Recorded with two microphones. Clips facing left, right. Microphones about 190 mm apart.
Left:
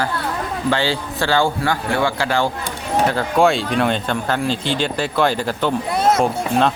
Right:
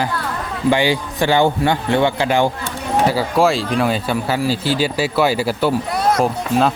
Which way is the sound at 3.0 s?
5° right (ahead or behind).